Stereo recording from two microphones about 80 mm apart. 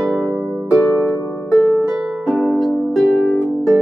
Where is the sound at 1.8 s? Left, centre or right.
Centre.